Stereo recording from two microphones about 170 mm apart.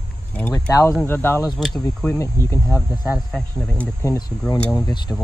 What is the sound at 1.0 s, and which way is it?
Speech, 15° left (ahead or behind).